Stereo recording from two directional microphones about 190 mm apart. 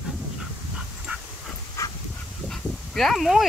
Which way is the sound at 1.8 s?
15° left (ahead or behind).